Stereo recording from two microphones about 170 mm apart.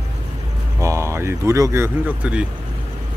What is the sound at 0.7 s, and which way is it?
Speech, 15° right (ahead or behind).